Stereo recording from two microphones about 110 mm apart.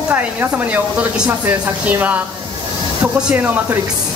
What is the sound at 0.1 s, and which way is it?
Speech, 15° right (ahead or behind).